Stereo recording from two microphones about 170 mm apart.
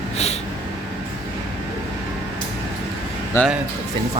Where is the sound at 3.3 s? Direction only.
15° left (ahead or behind).